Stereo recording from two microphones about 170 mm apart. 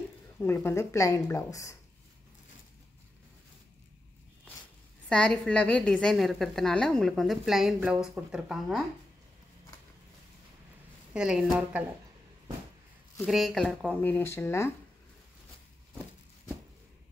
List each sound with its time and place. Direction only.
0.4 s speech: 15° left (ahead or behind)
5.1 s a woman's voice: 5° left (ahead or behind)
11.1 s a woman's voice: 5° right (ahead or behind)
13.2 s speech: centre (ahead or behind); by 14.7 s 15° left (ahead or behind)